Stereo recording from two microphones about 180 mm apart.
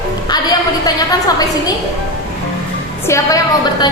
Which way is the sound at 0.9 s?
20° left (ahead or behind).